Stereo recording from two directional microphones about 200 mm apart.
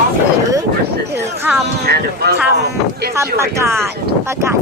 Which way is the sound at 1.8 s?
55° right (ahead or behind).